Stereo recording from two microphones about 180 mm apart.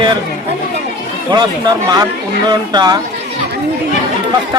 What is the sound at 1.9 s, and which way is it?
Speech, 20° right (ahead or behind).